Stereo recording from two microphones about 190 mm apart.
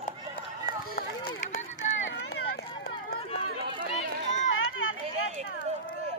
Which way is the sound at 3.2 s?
30° left (ahead or behind).